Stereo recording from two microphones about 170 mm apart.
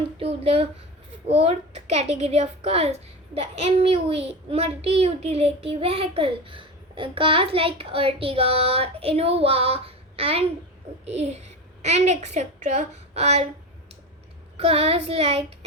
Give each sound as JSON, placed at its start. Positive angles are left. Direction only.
{"t": 0.2, "sound": "a child's voice", "side_deg": -35}
{"t": 14.5, "sound": "a child's voice", "side_deg": -35}